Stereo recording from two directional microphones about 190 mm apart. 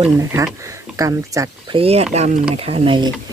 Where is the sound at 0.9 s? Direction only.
15° right (ahead or behind).